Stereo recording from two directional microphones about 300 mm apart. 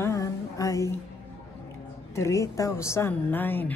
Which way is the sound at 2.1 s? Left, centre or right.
Centre.